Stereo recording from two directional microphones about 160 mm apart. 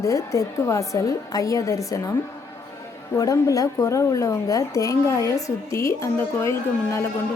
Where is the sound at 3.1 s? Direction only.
20° left (ahead or behind).